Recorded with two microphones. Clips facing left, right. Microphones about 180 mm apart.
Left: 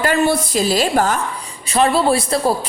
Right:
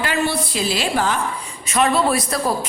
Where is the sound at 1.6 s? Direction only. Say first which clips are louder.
Left 3 dB; 30° left (ahead or behind).